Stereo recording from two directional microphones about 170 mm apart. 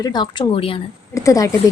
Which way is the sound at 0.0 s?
25° left (ahead or behind).